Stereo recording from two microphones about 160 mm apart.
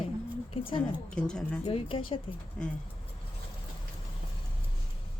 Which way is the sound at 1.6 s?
35° left (ahead or behind).